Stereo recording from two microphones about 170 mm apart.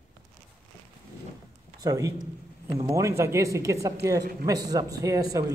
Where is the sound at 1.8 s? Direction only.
20° right (ahead or behind).